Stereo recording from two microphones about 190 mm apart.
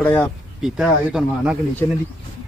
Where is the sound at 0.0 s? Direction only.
10° left (ahead or behind).